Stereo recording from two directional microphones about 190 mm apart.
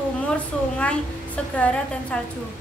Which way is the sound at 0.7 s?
5° left (ahead or behind).